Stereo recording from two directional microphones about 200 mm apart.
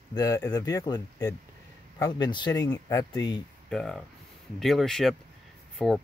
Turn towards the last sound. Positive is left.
turn(degrees=0)  # may be behind; listen again after turning